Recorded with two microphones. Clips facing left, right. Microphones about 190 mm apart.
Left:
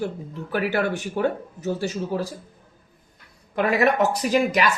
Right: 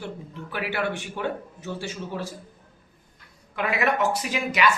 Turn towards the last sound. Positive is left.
turn(degrees=40)  # may be behind; listen again after turning